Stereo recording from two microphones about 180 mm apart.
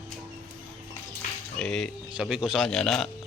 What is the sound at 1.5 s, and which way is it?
Speech, 5° left (ahead or behind).